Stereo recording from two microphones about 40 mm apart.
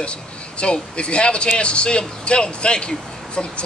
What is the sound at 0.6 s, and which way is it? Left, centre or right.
A man's voice, left.